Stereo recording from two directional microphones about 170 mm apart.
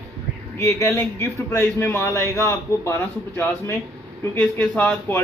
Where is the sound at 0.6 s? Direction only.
20° left (ahead or behind).